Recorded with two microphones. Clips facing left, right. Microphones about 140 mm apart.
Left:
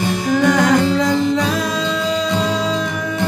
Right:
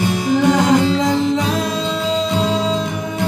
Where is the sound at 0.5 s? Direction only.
25° right (ahead or behind).